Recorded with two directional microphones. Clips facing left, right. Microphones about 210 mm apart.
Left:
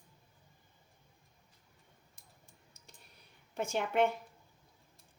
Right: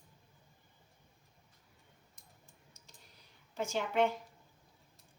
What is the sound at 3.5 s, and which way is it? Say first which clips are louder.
Speech: left 1 dB; 55° left (ahead or behind).